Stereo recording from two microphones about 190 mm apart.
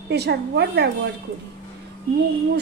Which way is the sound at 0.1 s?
60° right (ahead or behind).